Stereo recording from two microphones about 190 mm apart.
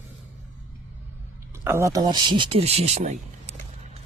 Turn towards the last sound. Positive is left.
turn(degrees=-35)  # may be behind; listen again after turning